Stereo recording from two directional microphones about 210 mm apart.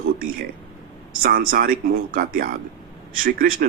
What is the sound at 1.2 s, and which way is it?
Speech, 45° right (ahead or behind).